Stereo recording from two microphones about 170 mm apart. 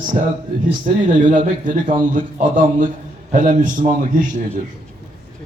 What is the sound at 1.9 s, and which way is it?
A man's voice, 50° right (ahead or behind).